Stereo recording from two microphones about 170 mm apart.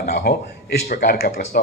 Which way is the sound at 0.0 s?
60° left (ahead or behind).